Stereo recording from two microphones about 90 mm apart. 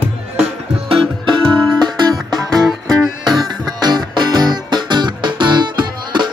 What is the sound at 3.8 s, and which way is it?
Music, 55° right (ahead or behind).